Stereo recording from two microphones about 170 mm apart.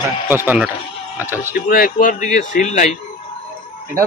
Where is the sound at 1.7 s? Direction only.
55° left (ahead or behind).